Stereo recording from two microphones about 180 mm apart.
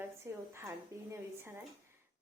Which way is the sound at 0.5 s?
15° right (ahead or behind).